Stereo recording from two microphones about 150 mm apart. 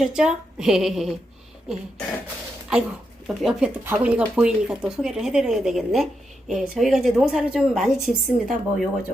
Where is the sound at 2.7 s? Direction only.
5° right (ahead or behind).